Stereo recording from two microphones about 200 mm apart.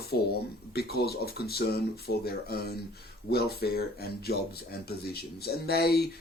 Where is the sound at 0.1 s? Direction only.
55° left (ahead or behind).